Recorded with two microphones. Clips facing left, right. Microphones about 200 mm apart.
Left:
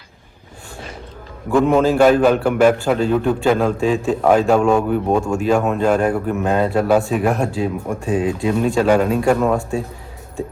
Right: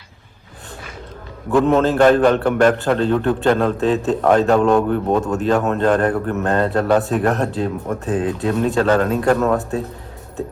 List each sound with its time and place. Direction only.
1.6 s a man's voice: 10° left (ahead or behind)